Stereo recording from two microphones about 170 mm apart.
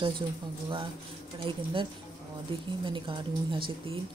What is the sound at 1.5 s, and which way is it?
Speech, 30° right (ahead or behind).